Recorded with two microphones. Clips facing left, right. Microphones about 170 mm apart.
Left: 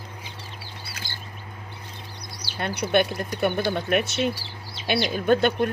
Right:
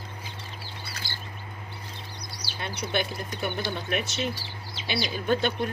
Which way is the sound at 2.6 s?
60° left (ahead or behind).